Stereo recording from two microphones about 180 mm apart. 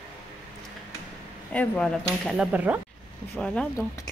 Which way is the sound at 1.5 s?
10° left (ahead or behind).